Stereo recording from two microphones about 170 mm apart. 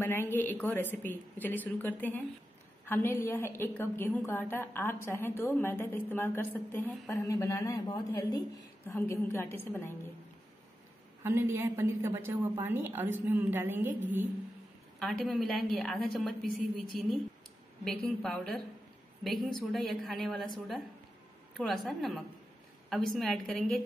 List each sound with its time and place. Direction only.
0.0 s a woman's voice: 15° left (ahead or behind)
11.2 s a woman's voice: 15° right (ahead or behind)
15.0 s a woman's voice: centre (ahead or behind)
17.8 s a woman's voice: centre (ahead or behind)